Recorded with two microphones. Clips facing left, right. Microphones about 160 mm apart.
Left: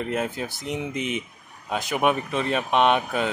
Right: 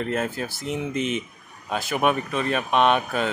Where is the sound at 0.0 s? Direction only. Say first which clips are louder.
Right 1 dB; 15° left (ahead or behind).